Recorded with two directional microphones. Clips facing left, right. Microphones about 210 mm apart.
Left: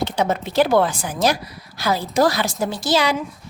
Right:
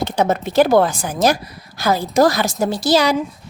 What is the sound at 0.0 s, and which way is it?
A woman's voice, 45° right (ahead or behind).